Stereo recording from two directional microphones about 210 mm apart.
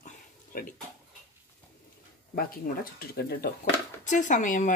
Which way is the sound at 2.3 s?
45° left (ahead or behind).